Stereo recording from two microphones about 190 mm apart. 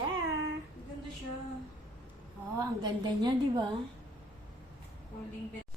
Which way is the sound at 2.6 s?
20° right (ahead or behind).